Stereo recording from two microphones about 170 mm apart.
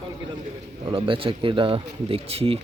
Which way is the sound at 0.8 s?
30° right (ahead or behind).